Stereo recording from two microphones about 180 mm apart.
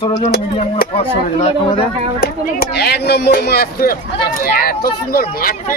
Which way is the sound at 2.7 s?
65° left (ahead or behind).